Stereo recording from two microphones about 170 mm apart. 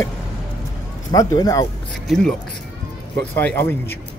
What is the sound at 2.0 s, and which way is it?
Speech, centre (ahead or behind).